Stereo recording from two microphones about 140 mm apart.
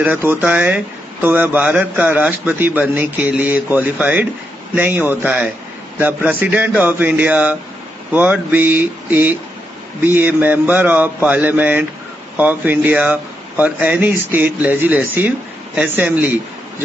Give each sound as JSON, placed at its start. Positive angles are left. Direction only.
{"t": 0.0, "sound": "speech", "side_deg": -15}